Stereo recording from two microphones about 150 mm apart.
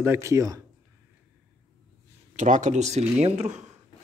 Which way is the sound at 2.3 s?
55° right (ahead or behind).